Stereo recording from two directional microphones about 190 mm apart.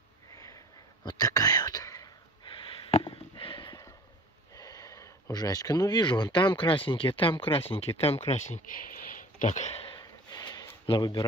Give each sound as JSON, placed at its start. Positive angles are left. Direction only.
{"t": 0.3, "sound": "sniff", "side_deg": 15}
{"t": 1.0, "sound": "whispering", "side_deg": 20}
{"t": 4.6, "sound": "speech", "side_deg": 20}
{"t": 9.9, "sound": "a sound", "side_deg": 20}